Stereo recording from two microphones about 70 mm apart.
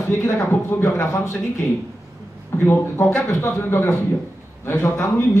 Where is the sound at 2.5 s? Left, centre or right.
Left.